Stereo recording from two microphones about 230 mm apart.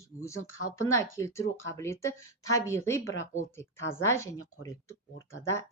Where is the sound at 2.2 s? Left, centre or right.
Left.